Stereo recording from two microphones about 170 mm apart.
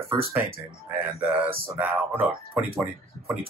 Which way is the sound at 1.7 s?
5° right (ahead or behind).